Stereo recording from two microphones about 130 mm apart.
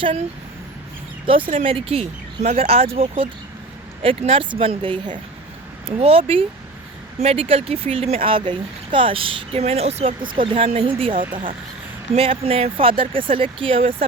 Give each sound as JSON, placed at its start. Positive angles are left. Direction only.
{"t": 0.0, "sound": "speech", "side_deg": -45}
{"t": 1.3, "sound": "speech", "side_deg": -45}